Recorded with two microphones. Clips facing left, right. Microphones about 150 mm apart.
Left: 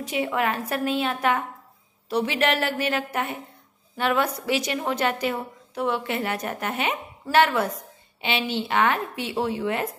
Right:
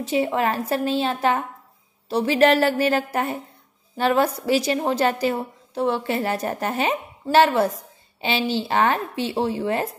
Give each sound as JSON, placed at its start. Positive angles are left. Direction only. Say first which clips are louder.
{"t": 0.0, "sound": "a woman's voice", "louder": "right 4 dB", "side_deg": -30}